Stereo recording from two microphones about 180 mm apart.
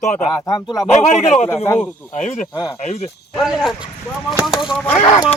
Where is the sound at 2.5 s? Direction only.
20° left (ahead or behind).